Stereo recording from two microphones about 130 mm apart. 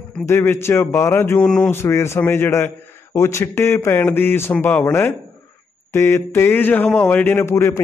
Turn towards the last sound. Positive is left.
turn(degrees=20)  # may be behind; listen again after turning